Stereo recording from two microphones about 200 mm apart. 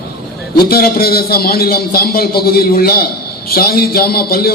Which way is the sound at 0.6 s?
50° left (ahead or behind).